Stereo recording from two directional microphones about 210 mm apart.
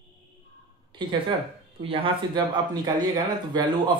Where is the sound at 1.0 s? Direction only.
20° right (ahead or behind).